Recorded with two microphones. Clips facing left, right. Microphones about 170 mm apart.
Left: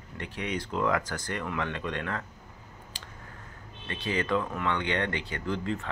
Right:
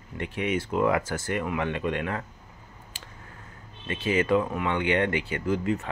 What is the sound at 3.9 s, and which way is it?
Speech, 15° right (ahead or behind).